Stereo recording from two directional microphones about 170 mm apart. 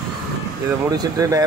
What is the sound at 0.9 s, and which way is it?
Speech, 20° right (ahead or behind).